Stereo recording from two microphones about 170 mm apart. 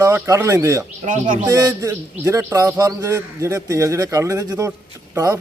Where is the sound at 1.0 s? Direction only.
50° right (ahead or behind).